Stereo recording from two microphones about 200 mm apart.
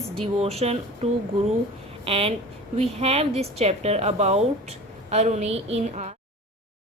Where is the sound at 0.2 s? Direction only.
30° right (ahead or behind).